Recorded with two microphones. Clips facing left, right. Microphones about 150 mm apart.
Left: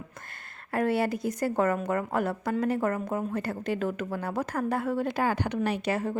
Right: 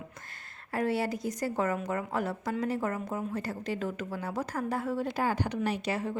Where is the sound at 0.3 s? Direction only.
55° left (ahead or behind).